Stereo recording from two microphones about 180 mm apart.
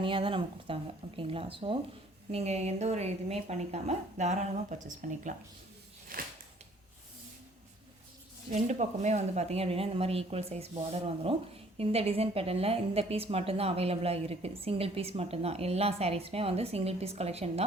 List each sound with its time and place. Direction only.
0.0 s a woman's voice: 30° right (ahead or behind); by 5.3 s 45° right (ahead or behind)
6.1 s a sound: 55° right (ahead or behind)
8.4 s a woman's voice: 40° right (ahead or behind)